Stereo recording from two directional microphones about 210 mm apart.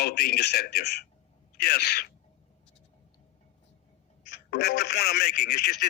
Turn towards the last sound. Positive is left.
turn(degrees=50)  # may be behind; listen again after turning